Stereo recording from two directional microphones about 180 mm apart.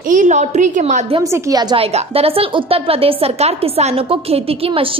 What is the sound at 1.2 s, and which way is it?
Speech, 15° right (ahead or behind).